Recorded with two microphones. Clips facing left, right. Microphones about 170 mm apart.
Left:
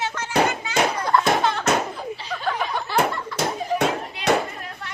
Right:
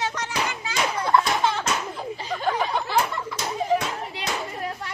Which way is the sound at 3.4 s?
60° left (ahead or behind).